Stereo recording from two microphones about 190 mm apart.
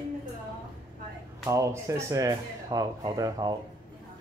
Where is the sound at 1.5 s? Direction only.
15° right (ahead or behind).